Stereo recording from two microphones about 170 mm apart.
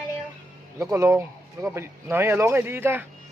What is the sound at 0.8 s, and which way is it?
Speech, 15° right (ahead or behind).